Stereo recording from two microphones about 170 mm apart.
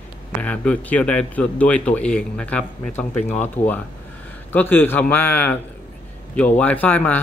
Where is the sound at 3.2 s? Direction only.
45° left (ahead or behind).